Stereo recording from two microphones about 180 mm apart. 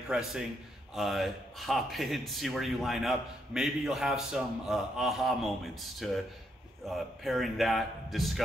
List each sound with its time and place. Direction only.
0.1 s a man's voice: 5° right (ahead or behind)